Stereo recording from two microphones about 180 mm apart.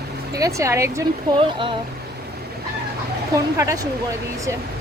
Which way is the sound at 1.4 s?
30° right (ahead or behind).